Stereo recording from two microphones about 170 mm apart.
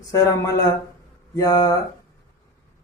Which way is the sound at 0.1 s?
20° left (ahead or behind).